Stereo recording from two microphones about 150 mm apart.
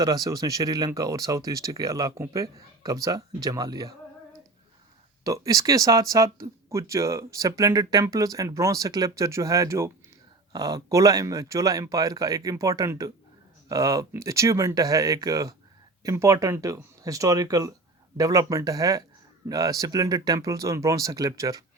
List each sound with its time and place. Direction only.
0.0 s speech: 25° right (ahead or behind)
5.2 s speech: 20° right (ahead or behind)